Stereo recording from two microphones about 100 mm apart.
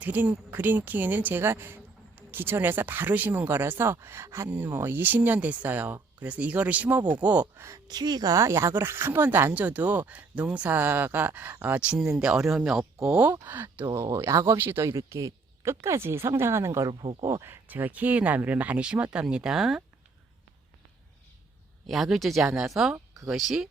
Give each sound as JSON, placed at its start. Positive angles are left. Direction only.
{"t": 0.0, "sound": "speech", "side_deg": -15}
{"t": 7.9, "sound": "speech", "side_deg": -40}
{"t": 13.4, "sound": "speech", "side_deg": -20}
{"t": 13.9, "sound": "speech", "side_deg": -30}
{"t": 16.9, "sound": "speech", "side_deg": -55}
{"t": 17.2, "sound": "speech", "side_deg": -25}
{"t": 21.8, "sound": "speech", "side_deg": 0}